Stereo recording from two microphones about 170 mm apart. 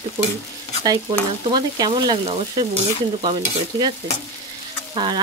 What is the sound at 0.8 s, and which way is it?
Stir, 25° right (ahead or behind).